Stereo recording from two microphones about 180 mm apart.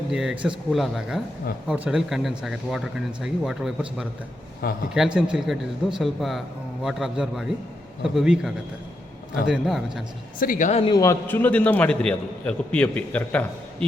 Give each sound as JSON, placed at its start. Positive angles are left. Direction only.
{"t": 0.1, "sound": "a man's voice", "side_deg": -5}
{"t": 4.6, "sound": "a man's voice", "side_deg": 55}
{"t": 4.9, "sound": "a man's voice", "side_deg": -5}
{"t": 10.4, "sound": "speech", "side_deg": 45}
{"t": 10.8, "sound": "a man's voice", "side_deg": 20}